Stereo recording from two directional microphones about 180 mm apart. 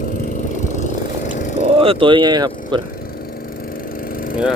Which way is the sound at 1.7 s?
30° right (ahead or behind).